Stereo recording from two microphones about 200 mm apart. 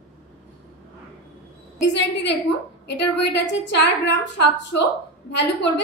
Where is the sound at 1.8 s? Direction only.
60° left (ahead or behind).